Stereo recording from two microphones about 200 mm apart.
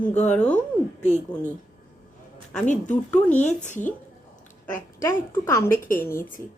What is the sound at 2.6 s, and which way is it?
Speech, 35° left (ahead or behind).